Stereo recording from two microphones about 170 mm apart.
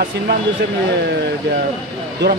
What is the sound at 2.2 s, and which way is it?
Speech, 90° right.